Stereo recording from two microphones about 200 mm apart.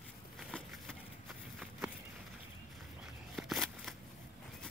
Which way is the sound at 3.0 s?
Centre (ahead or behind).